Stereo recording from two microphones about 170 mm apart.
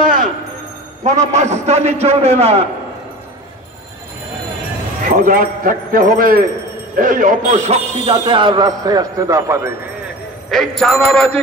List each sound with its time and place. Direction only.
0.0 s music: 55° right (ahead or behind)
1.0 s a man's voice: 45° right (ahead or behind)
5.0 s a man's voice: 55° right (ahead or behind); by 9.8 s 15° right (ahead or behind)
10.8 s a sound: 5° left (ahead or behind)